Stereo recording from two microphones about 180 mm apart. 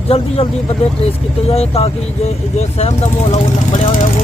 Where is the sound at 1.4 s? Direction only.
35° left (ahead or behind).